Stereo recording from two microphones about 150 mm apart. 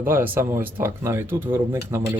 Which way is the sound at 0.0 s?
15° right (ahead or behind).